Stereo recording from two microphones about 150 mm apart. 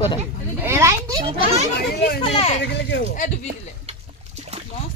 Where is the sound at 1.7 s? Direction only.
90° left.